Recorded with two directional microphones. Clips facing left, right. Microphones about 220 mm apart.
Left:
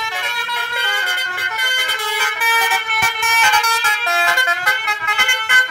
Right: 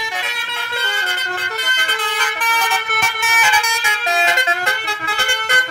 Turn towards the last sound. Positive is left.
turn(degrees=-35)  # may be behind; listen again after turning